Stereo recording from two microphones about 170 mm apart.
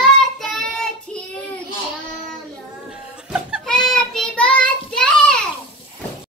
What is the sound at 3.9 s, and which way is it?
Child singing, 5° left (ahead or behind).